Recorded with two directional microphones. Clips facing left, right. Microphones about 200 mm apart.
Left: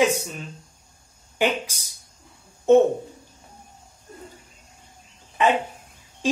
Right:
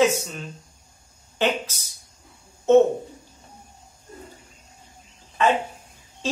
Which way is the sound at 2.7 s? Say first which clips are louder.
Even; 15° left (ahead or behind).